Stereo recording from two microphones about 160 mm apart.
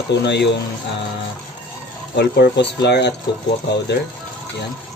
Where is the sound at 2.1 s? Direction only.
90° left.